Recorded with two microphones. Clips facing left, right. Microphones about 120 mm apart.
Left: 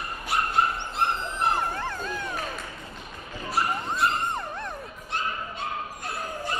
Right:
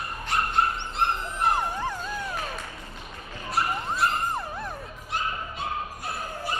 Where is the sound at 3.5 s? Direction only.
Centre (ahead or behind).